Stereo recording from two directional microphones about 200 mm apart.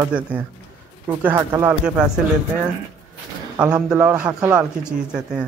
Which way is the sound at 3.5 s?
5° right (ahead or behind).